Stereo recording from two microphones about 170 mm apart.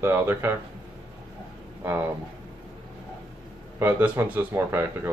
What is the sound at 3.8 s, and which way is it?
Speech, 10° right (ahead or behind).